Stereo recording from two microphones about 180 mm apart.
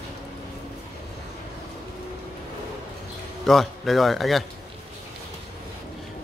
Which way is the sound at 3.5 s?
Centre (ahead or behind).